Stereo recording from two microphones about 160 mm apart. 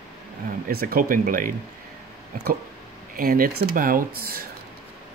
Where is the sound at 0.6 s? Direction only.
70° right (ahead or behind).